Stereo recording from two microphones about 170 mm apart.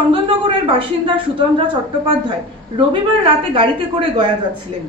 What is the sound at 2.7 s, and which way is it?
Speech, 30° right (ahead or behind).